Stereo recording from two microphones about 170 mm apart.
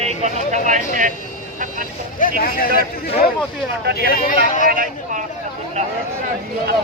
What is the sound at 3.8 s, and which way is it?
Speech, 80° right.